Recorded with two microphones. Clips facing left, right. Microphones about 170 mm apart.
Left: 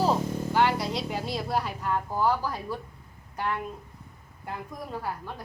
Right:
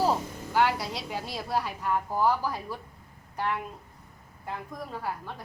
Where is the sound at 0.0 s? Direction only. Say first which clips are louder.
Left 2 dB; 5° right (ahead or behind).